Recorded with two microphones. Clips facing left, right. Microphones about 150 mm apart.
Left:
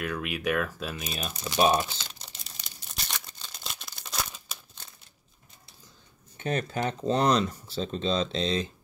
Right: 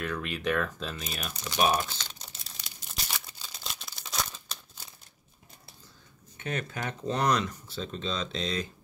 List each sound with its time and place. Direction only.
0.0 s speech: 10° left (ahead or behind)
1.1 s speech: 25° left (ahead or behind)
1.8 s speech: 10° left (ahead or behind)
2.2 s a sound: centre (ahead or behind)
6.3 s speech: 30° left (ahead or behind)